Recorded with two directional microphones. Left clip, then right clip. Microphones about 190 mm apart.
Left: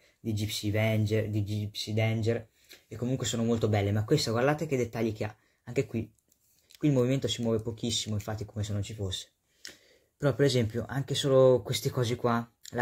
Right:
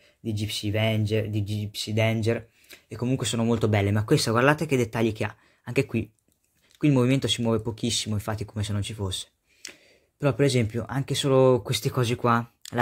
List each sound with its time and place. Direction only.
0.2 s speech: 20° right (ahead or behind); by 9.3 s 40° right (ahead or behind)
10.2 s speech: 25° right (ahead or behind)